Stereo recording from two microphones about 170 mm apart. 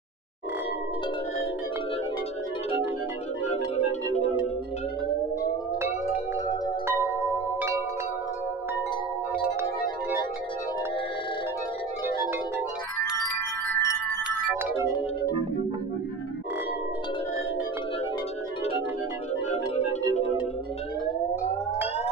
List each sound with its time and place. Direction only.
13.1 s wind chime: 15° left (ahead or behind)